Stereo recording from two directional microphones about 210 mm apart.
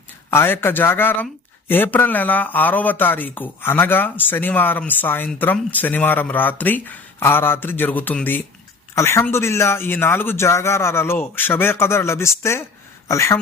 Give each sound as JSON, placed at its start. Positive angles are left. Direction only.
{"t": 0.3, "sound": "speech", "side_deg": 10}